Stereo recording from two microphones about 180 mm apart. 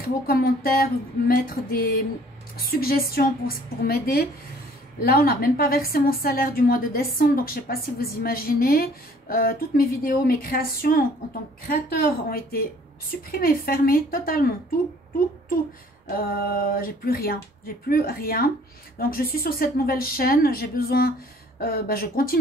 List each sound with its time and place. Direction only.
0.0 s a woman's voice: 55° left (ahead or behind)
16.2 s a woman's voice: 55° left (ahead or behind)